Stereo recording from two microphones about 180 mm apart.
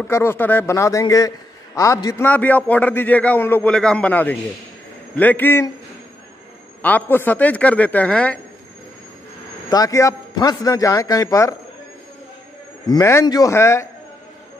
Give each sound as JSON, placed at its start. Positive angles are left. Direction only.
{"t": 0.0, "sound": "a man's voice", "side_deg": 15}
{"t": 6.8, "sound": "a man's voice", "side_deg": 10}
{"t": 9.7, "sound": "a man's voice", "side_deg": 20}
{"t": 12.8, "sound": "a man's voice", "side_deg": 20}